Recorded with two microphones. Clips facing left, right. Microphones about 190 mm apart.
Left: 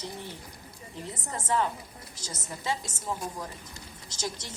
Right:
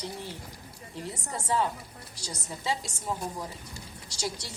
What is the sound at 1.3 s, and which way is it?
A woman's voice, 10° right (ahead or behind).